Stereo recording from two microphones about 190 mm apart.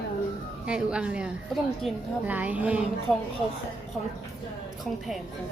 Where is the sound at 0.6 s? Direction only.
5° right (ahead or behind).